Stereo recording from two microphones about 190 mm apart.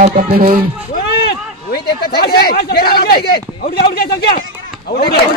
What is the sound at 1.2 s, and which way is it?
Speech, 55° left (ahead or behind).